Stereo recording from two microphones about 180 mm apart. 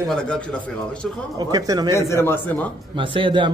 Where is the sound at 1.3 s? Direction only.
20° right (ahead or behind).